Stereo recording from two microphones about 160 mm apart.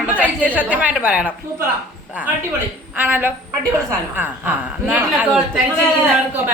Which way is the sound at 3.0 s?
10° right (ahead or behind).